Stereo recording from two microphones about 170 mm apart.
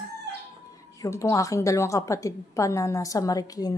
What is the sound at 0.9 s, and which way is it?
A woman's voice, 20° left (ahead or behind).